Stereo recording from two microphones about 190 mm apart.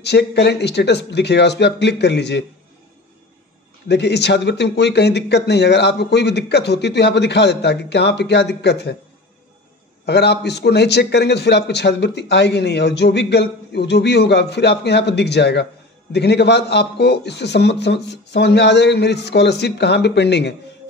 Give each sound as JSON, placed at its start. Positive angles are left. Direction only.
{"t": 0.0, "sound": "a man's voice", "side_deg": 65}
{"t": 3.9, "sound": "a man's voice", "side_deg": 60}
{"t": 10.0, "sound": "a man's voice", "side_deg": 60}